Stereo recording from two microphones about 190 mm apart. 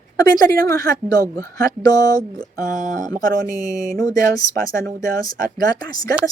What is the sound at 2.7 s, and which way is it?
Speech, 40° right (ahead or behind).